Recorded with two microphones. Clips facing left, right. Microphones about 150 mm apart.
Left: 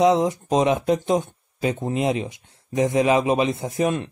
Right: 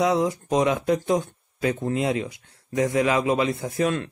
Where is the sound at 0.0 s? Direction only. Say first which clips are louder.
Left 4 dB; 20° left (ahead or behind).